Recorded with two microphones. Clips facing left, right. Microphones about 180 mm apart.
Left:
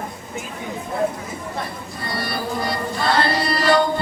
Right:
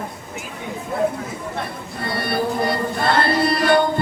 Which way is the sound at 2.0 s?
60° right (ahead or behind).